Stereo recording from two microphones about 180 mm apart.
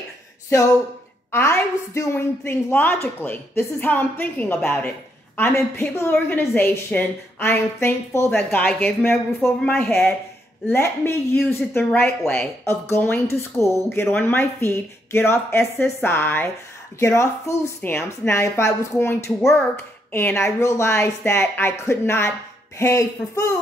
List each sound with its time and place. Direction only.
1.3 s a woman's voice: 15° left (ahead or behind)